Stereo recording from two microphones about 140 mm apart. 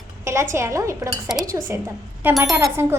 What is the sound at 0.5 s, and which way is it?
Speech, 20° right (ahead or behind).